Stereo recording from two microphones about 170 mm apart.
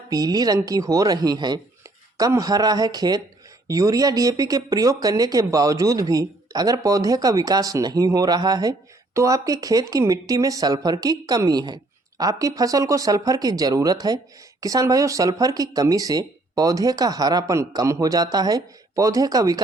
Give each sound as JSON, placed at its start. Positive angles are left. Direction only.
{"t": 0.1, "sound": "speech", "side_deg": -20}